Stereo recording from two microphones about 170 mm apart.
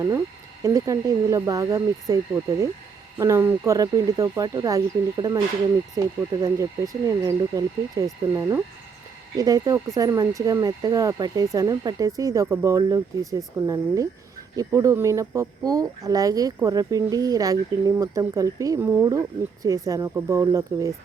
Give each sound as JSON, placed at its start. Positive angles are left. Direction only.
{"t": 0.6, "sound": "speech", "side_deg": -20}